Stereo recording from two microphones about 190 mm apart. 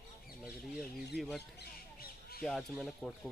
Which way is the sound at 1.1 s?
60° left (ahead or behind).